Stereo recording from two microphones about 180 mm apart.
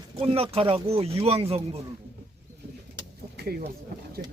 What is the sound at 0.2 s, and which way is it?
Speech, 30° right (ahead or behind).